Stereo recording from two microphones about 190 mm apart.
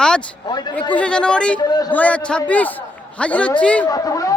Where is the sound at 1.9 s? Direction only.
5° left (ahead or behind).